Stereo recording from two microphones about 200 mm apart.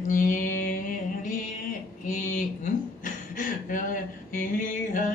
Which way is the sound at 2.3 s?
40° left (ahead or behind).